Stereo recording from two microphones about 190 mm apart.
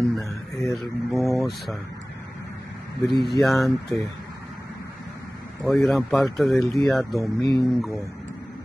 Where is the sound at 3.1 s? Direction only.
Centre (ahead or behind).